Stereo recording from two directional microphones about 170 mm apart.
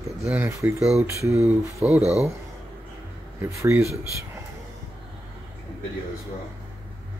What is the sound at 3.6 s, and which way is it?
Speech, 15° right (ahead or behind).